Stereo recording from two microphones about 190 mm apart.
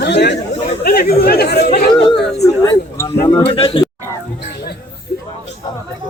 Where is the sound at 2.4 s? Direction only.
15° left (ahead or behind).